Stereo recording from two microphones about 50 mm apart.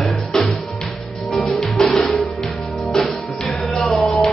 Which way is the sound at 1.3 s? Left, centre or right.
Centre.